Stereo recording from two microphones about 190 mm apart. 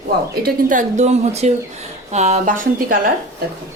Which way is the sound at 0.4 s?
45° right (ahead or behind).